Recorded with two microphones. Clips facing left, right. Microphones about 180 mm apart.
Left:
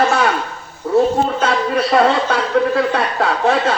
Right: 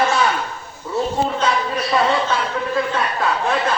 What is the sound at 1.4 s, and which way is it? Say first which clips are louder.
A man's voice: left 4 dB; 60° left (ahead or behind).